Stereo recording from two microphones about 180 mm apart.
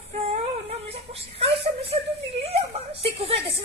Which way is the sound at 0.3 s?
35° right (ahead or behind).